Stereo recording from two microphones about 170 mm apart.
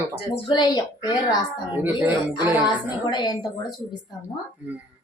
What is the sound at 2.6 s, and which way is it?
A woman's voice, 25° left (ahead or behind).